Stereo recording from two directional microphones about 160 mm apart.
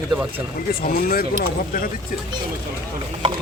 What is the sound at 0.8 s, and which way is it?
Speech, 65° left (ahead or behind).